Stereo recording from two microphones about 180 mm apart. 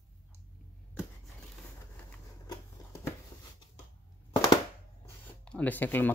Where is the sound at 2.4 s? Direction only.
20° left (ahead or behind).